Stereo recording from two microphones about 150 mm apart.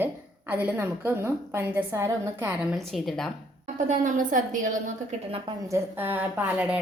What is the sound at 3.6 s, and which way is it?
A woman's voice, 55° right (ahead or behind).